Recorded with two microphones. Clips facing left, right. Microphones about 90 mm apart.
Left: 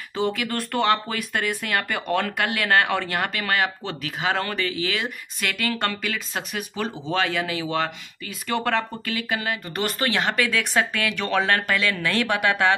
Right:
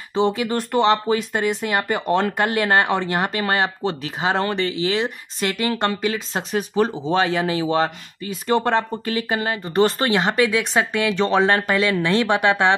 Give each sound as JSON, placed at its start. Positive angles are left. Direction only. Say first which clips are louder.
{"t": 0.1, "sound": "speech", "louder": "right 5 dB", "side_deg": -25}